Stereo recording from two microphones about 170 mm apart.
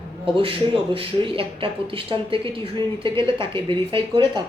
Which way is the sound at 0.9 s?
30° right (ahead or behind).